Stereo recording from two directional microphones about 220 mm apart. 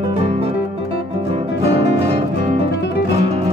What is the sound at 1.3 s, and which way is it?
Music, 30° right (ahead or behind).